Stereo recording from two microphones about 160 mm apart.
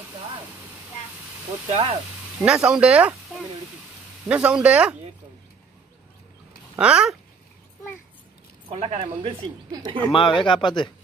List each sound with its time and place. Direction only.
1.7 s speech: 40° right (ahead or behind)
2.4 s speech: 5° right (ahead or behind)
4.3 s speech: 10° right (ahead or behind)
6.8 s speech: 5° right (ahead or behind)
8.6 s speech: 40° right (ahead or behind)
10.1 s speech: 35° left (ahead or behind)